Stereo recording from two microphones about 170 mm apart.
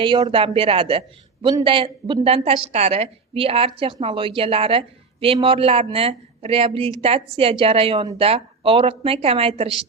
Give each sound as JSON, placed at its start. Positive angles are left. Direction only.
{"t": 0.0, "sound": "a woman's voice", "side_deg": -30}